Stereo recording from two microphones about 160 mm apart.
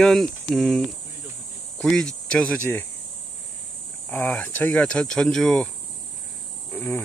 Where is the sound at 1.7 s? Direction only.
5° left (ahead or behind).